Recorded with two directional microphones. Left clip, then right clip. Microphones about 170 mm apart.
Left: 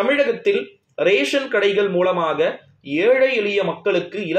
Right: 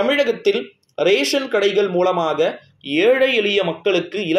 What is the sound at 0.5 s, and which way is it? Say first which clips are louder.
Speech: right 1 dB; 45° right (ahead or behind).